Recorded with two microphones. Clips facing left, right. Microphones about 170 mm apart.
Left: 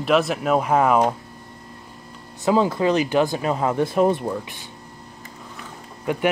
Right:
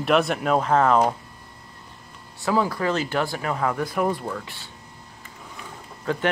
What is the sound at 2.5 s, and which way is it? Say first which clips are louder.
Speech: left 4 dB; 20° left (ahead or behind).